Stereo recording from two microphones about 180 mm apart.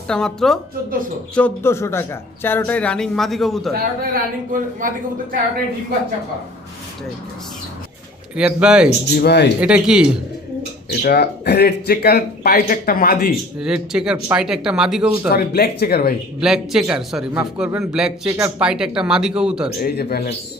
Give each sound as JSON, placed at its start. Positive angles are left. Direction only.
{"t": 0.1, "sound": "a man's voice", "side_deg": 5}
{"t": 3.8, "sound": "speech", "side_deg": -50}
{"t": 8.4, "sound": "speech", "side_deg": -5}
{"t": 9.1, "sound": "speech", "side_deg": 65}
{"t": 9.6, "sound": "speech", "side_deg": -5}
{"t": 10.8, "sound": "speech", "side_deg": 60}
{"t": 13.6, "sound": "speech", "side_deg": -5}
{"t": 15.3, "sound": "speech", "side_deg": 60}
{"t": 16.4, "sound": "speech", "side_deg": -5}
{"t": 19.8, "sound": "speech", "side_deg": 60}